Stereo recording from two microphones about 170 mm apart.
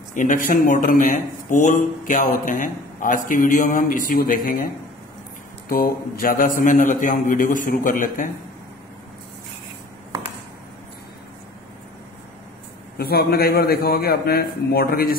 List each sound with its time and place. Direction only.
0.1 s speech: 50° left (ahead or behind)
5.7 s speech: 60° left (ahead or behind)
12.9 s a man's voice: 65° left (ahead or behind)